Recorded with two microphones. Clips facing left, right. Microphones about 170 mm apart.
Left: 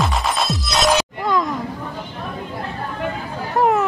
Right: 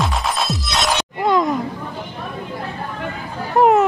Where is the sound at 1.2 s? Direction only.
25° right (ahead or behind).